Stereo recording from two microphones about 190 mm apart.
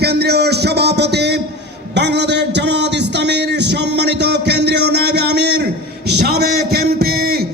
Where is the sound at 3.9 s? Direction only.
65° right (ahead or behind).